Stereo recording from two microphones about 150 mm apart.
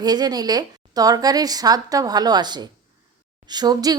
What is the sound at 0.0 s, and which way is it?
Speech, 25° right (ahead or behind).